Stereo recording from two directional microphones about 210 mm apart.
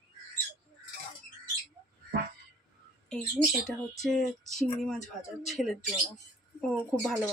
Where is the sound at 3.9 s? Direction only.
Centre (ahead or behind).